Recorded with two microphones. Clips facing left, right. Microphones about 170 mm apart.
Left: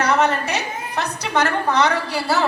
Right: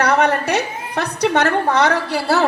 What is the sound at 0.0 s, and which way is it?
A woman's voice, 65° right (ahead or behind).